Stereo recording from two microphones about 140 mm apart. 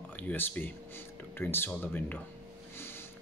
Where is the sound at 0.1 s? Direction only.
15° left (ahead or behind).